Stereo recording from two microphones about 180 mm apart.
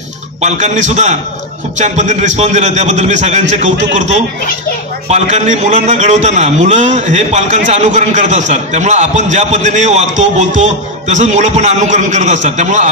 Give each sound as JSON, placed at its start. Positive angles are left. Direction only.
{"t": 0.4, "sound": "a man's voice", "side_deg": -40}